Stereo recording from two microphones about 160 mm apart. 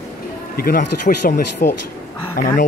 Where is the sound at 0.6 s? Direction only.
65° left (ahead or behind).